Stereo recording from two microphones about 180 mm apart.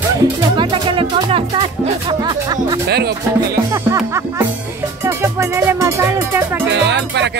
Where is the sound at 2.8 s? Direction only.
65° right (ahead or behind).